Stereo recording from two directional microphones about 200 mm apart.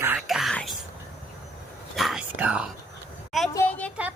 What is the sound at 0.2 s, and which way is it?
Whispering, centre (ahead or behind).